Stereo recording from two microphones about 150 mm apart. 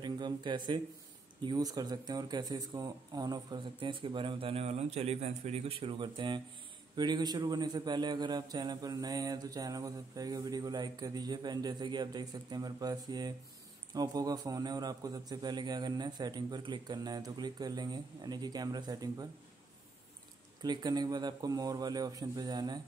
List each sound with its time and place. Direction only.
0.0 s a man's voice: 30° right (ahead or behind)
20.6 s a man's voice: 30° right (ahead or behind)